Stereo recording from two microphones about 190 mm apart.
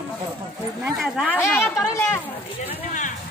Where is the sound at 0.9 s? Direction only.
Centre (ahead or behind).